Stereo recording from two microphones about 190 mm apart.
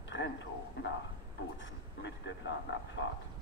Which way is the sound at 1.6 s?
65° left (ahead or behind).